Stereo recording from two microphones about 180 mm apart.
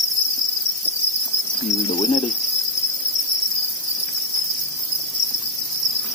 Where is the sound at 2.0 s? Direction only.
40° left (ahead or behind).